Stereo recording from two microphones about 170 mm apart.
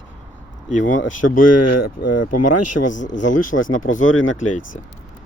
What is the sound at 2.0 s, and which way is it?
Speech, 75° left (ahead or behind).